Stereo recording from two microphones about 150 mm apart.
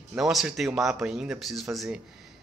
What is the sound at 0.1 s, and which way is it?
Speech, centre (ahead or behind).